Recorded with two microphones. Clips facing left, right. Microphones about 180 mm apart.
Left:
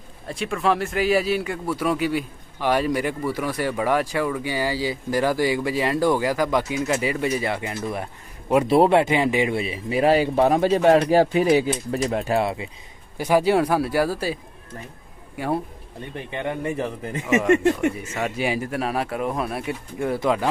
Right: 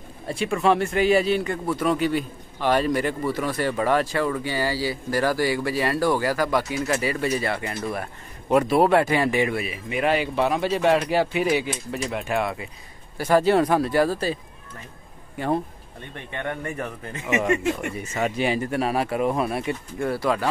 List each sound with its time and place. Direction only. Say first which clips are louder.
0.3 s a man's voice: right 2 dB; centre (ahead or behind)
8.6 s speech: left 4 dB; 25° left (ahead or behind)
13.2 s a man's voice: even; 10° left (ahead or behind)
16.3 s a man's voice: left 3 dB; 25° left (ahead or behind)
17.4 s speech: left 5 dB; centre (ahead or behind)
20.1 s a man's voice: left 2 dB; 15° left (ahead or behind)